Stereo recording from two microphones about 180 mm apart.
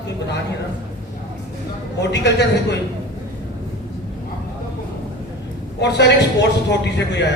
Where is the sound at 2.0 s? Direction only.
70° left (ahead or behind).